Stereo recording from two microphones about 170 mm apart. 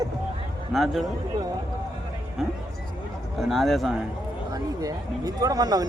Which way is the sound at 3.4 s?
Centre (ahead or behind).